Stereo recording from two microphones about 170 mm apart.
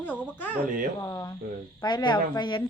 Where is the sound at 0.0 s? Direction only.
10° left (ahead or behind).